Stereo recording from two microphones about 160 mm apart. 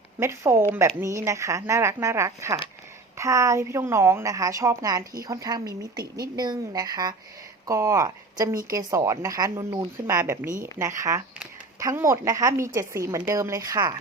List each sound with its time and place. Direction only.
0.2 s a woman's voice: 15° right (ahead or behind)